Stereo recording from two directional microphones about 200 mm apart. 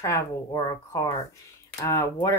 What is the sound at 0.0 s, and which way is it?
Speech, 15° left (ahead or behind).